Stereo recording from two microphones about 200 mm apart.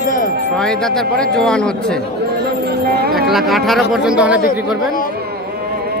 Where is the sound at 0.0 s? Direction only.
40° left (ahead or behind).